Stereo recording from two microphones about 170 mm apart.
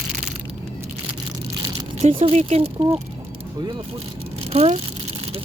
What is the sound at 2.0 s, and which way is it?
Speech, 35° right (ahead or behind).